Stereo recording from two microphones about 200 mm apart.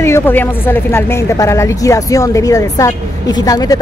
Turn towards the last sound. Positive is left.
turn(degrees=20)  # may be behind; listen again after turning